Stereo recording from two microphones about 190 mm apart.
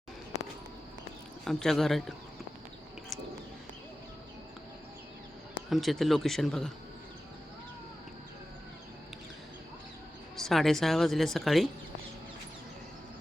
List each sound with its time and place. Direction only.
1.5 s a woman's voice: centre (ahead or behind)
5.7 s a woman's voice: centre (ahead or behind)
10.3 s a woman's voice: centre (ahead or behind)